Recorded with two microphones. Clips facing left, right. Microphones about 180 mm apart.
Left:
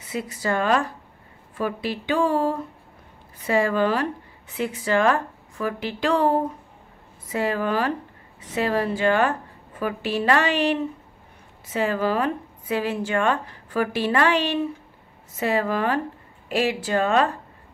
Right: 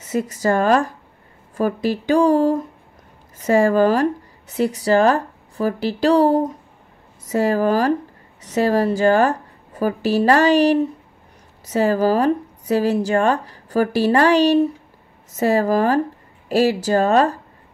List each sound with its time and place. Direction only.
0.0 s speech: 45° right (ahead or behind)